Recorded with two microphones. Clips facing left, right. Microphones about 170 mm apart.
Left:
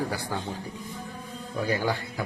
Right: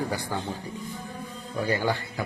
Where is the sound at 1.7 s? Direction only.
10° left (ahead or behind).